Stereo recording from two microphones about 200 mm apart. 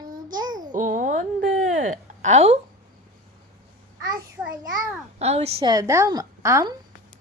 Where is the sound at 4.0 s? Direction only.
20° right (ahead or behind).